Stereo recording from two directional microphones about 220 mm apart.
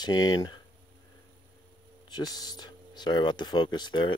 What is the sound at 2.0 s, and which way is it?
Speech, 20° left (ahead or behind).